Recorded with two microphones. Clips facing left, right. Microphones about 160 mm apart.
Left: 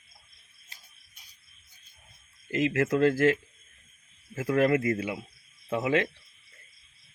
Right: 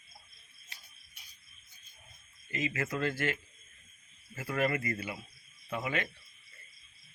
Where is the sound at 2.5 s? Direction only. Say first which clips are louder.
Left 9 dB; 85° left.